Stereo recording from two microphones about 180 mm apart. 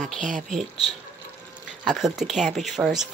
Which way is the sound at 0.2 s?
45° right (ahead or behind).